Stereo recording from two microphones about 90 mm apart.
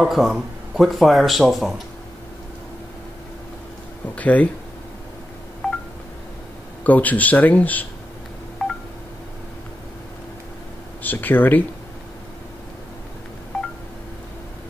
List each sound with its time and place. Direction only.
0.0 s speech: centre (ahead or behind)
4.1 s speech: 15° left (ahead or behind)
5.6 s telephone dialing: centre (ahead or behind)
6.8 s speech: 20° left (ahead or behind)
11.0 s speech: 20° left (ahead or behind)